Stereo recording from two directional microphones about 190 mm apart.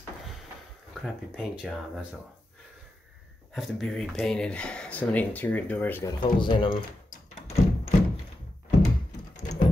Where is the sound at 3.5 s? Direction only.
Centre (ahead or behind).